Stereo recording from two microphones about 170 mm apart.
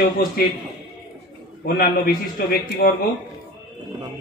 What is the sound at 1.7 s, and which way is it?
A man's voice, 65° left (ahead or behind).